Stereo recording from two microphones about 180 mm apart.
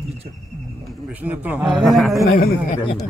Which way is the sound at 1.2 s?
10° right (ahead or behind).